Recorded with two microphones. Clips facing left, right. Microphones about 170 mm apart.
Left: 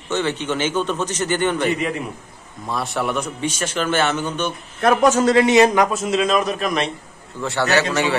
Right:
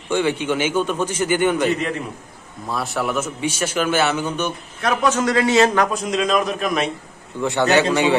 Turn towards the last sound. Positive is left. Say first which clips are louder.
# right 2 dB
turn(degrees=-15)  # may be behind; listen again after turning